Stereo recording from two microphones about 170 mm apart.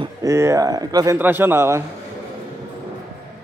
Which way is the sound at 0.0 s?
20° right (ahead or behind).